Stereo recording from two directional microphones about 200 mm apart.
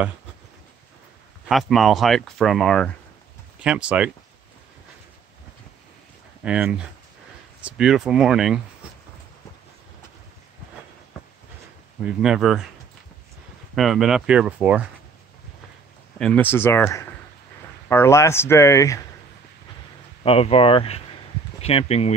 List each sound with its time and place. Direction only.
1.5 s speech: centre (ahead or behind)
6.4 s speech: 5° right (ahead or behind)
12.0 s speech: 5° right (ahead or behind)
13.7 s speech: centre (ahead or behind)
16.2 s speech: 5° left (ahead or behind)
20.2 s speech: 30° left (ahead or behind)